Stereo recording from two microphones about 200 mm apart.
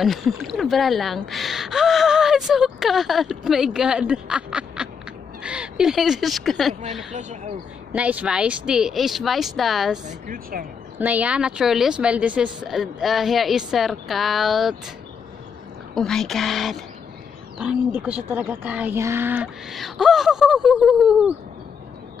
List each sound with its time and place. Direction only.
0.0 s speech: centre (ahead or behind)
7.1 s speech: 35° right (ahead or behind)
7.9 s speech: 5° right (ahead or behind)
10.0 s speech: 45° right (ahead or behind)
11.0 s speech: 10° right (ahead or behind)
15.9 s speech: 5° left (ahead or behind)